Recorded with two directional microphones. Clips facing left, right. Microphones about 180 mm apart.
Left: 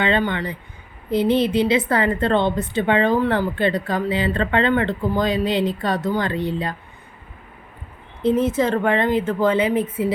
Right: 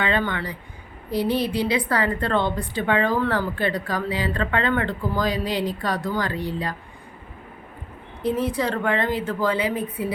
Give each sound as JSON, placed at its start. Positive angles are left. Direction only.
{"t": 0.0, "sound": "a woman's voice", "side_deg": 25}
{"t": 8.2, "sound": "a woman's voice", "side_deg": 20}